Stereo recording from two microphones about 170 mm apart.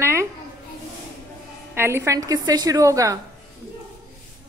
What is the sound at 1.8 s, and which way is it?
A woman's voice, 15° right (ahead or behind).